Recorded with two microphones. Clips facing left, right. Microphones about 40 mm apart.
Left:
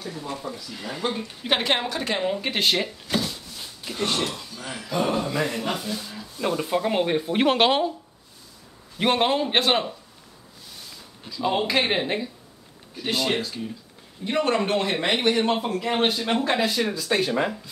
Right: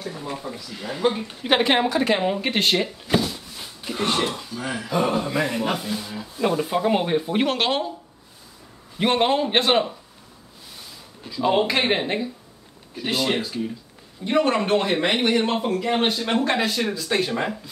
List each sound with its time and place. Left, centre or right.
0.0 s a sound: centre
0.3 s speech: centre
0.6 s speech: centre
3.1 s a sound: centre
4.6 s speech: centre
7.4 s speech: centre
8.9 s speech: centre
11.2 s speech: centre